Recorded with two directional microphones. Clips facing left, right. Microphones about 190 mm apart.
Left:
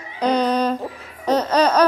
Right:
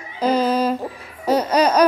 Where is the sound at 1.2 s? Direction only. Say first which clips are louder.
Even; 10° right (ahead or behind).